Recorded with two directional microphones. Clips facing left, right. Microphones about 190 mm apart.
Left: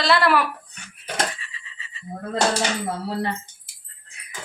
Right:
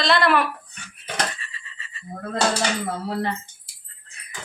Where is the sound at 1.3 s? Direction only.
20° left (ahead or behind).